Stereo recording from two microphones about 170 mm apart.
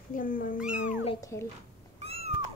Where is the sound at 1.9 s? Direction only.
35° right (ahead or behind).